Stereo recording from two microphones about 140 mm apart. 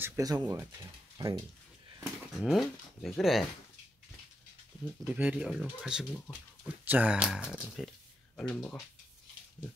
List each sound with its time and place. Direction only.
0.0 s speech: 20° right (ahead or behind)
2.4 s speech: centre (ahead or behind)
5.0 s speech: 10° right (ahead or behind); by 8.7 s 5° left (ahead or behind)